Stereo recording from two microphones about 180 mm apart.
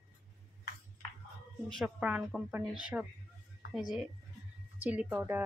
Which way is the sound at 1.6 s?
Centre (ahead or behind).